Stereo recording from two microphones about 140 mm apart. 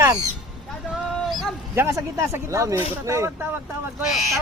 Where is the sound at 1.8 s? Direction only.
20° right (ahead or behind).